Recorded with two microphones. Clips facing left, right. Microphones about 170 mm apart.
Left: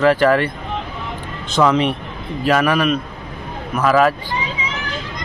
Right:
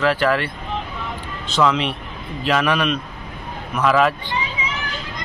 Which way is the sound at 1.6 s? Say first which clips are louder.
Left 3 dB; 30° left (ahead or behind).